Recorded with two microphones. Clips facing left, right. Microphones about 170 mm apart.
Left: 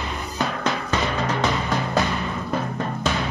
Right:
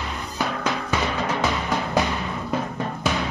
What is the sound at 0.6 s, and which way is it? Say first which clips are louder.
Music: even; 10° right (ahead or behind).